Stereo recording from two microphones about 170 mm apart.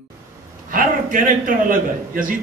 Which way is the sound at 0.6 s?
55° right (ahead or behind).